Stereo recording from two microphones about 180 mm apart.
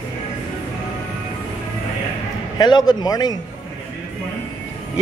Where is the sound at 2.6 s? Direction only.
25° left (ahead or behind).